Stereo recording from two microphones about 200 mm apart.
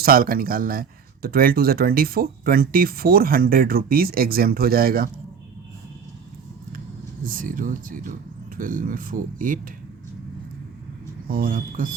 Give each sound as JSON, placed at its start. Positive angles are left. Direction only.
{"t": 0.0, "sound": "speech", "side_deg": -45}
{"t": 7.3, "sound": "speech", "side_deg": -45}
{"t": 11.3, "sound": "speech", "side_deg": -45}